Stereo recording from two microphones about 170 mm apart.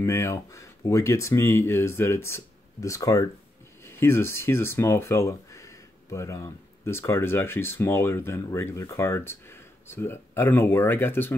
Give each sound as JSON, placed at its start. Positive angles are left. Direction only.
{"t": 0.0, "sound": "speech", "side_deg": 15}